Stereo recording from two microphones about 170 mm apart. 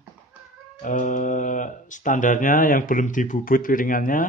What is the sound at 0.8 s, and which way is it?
Speech, 50° left (ahead or behind).